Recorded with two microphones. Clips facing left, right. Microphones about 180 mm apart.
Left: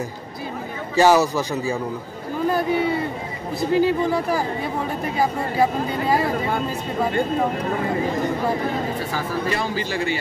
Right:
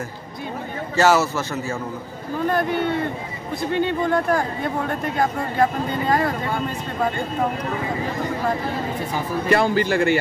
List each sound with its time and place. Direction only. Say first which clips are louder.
0.9 s a man's voice: left 2 dB; 15° left (ahead or behind)
3.7 s speech: left 2 dB; 5° left (ahead or behind)
9.5 s a man's voice: right 6 dB; 55° right (ahead or behind)